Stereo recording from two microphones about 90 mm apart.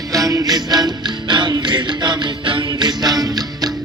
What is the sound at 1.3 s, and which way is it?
Music, 60° right (ahead or behind).